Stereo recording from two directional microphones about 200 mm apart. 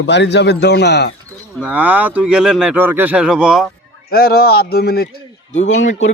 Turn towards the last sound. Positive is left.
turn(degrees=35)  # may be behind; listen again after turning